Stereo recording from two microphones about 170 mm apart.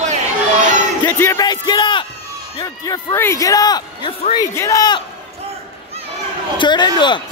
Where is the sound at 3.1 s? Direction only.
15° left (ahead or behind); by 4.3 s 30° left (ahead or behind).